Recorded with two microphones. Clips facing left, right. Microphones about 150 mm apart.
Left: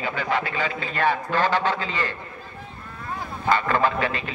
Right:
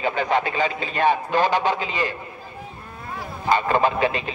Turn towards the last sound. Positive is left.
turn(degrees=-20)  # may be behind; listen again after turning